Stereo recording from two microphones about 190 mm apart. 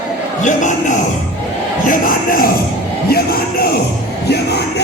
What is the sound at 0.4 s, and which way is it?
Speech, 40° left (ahead or behind).